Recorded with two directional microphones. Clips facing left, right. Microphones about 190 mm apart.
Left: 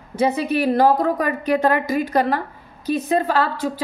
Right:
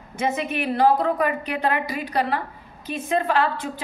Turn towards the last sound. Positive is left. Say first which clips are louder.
# left 2 dB
turn(degrees=40)  # may be behind; listen again after turning